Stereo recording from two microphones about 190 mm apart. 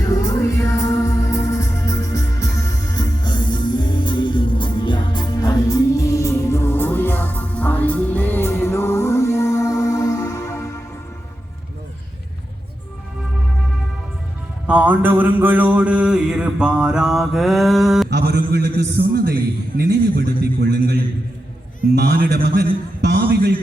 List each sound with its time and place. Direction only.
0.2 s music: 15° left (ahead or behind)
14.7 s mantra: 10° right (ahead or behind)
18.1 s a sound: 60° right (ahead or behind)